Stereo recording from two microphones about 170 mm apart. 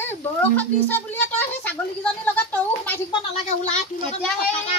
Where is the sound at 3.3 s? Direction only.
40° left (ahead or behind).